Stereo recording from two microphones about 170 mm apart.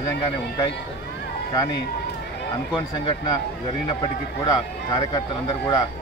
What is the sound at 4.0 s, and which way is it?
Speech, 20° left (ahead or behind).